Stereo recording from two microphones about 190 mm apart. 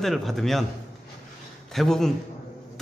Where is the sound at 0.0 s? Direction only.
Centre (ahead or behind).